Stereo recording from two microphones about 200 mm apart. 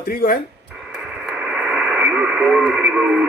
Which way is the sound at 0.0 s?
45° left (ahead or behind).